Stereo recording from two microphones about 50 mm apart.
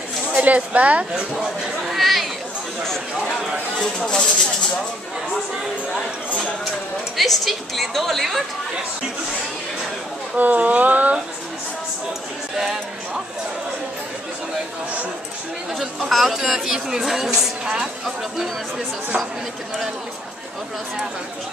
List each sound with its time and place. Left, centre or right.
0.4 s speech: right
1.1 s cat: centre
2.8 s speech: centre
7.2 s a woman's voice: centre
10.3 s speech: right
12.5 s a woman's voice: centre
16.1 s a woman's voice: centre